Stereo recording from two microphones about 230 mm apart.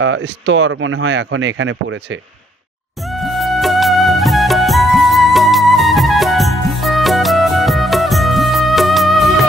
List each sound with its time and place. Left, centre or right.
0.0 s speech: right
3.1 s music: centre